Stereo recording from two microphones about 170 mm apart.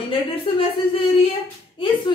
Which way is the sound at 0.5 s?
35° left (ahead or behind).